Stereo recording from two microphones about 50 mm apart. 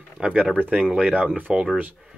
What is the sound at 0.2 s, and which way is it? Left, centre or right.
Speech, right.